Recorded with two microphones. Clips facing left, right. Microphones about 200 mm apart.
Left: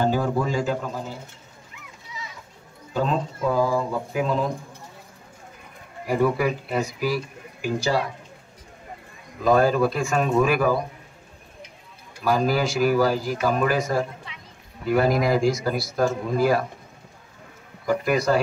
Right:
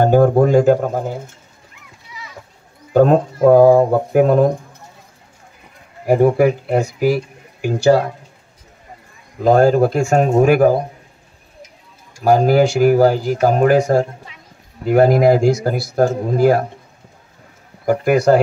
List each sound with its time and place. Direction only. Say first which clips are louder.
0.0 s speech: right 11 dB; 55° right (ahead or behind)
2.9 s speech: right 12 dB; 55° right (ahead or behind)
6.0 s speech: right 9 dB; 55° right (ahead or behind)
9.4 s speech: right 7 dB; 70° right (ahead or behind)
12.3 s speech: right 9 dB; 65° right (ahead or behind)
14.3 s a sound: even; 40° right (ahead or behind)
14.9 s speech: right 8 dB; 60° right (ahead or behind)
17.8 s speech: right 8 dB; 65° right (ahead or behind)